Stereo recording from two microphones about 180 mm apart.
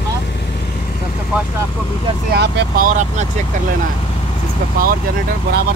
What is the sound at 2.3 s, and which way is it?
Vehicle, 60° right (ahead or behind).